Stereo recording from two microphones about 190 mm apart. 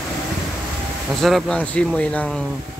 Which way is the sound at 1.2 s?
Centre (ahead or behind).